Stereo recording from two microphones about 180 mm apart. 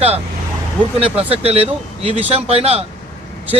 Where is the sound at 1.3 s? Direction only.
35° right (ahead or behind).